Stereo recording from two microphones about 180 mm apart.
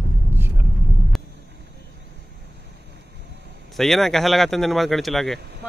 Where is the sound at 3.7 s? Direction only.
Centre (ahead or behind).